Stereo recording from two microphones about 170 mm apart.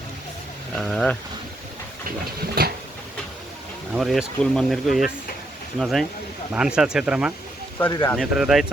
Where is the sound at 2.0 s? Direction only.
60° right (ahead or behind).